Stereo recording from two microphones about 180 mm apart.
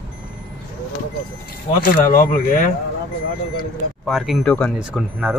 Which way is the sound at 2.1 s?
50° left (ahead or behind).